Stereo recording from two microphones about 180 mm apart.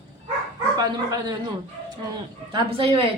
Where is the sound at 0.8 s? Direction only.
20° right (ahead or behind).